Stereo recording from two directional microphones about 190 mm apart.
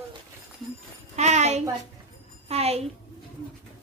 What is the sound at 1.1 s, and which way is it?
A woman's voice, 35° right (ahead or behind).